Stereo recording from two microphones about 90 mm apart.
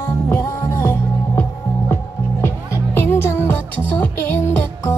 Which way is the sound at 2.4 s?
25° left (ahead or behind).